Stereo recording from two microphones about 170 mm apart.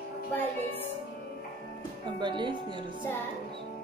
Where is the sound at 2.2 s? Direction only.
25° right (ahead or behind).